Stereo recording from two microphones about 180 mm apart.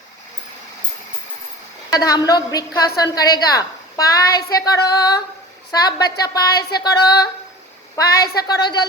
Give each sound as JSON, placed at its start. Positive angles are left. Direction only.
{"t": 1.9, "sound": "a woman's voice", "side_deg": 20}